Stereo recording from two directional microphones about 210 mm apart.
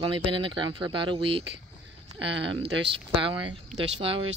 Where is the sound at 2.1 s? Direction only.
55° right (ahead or behind).